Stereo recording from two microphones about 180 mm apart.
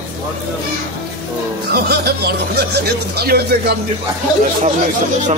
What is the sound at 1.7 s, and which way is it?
Speech, 65° right (ahead or behind).